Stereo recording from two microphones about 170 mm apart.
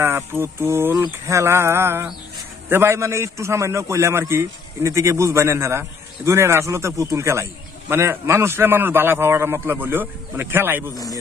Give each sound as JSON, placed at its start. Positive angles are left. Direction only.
{"t": 0.0, "sound": "a man's voice", "side_deg": -15}